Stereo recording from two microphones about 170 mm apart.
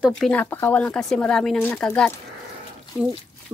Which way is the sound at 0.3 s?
10° left (ahead or behind).